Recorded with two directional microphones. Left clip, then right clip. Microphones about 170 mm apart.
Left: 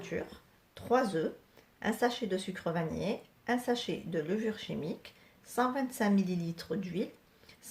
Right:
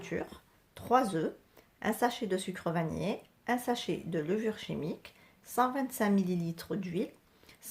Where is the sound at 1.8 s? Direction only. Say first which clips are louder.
Even; 30° right (ahead or behind).